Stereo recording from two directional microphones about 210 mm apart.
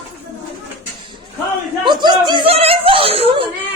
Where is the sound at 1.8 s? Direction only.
20° right (ahead or behind).